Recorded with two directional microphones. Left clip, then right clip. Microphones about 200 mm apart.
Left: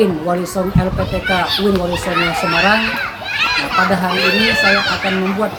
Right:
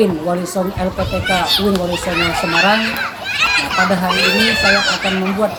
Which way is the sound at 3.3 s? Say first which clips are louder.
Right 1 dB; 60° right (ahead or behind).